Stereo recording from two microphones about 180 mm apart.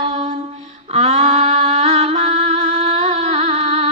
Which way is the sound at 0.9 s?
40° right (ahead or behind).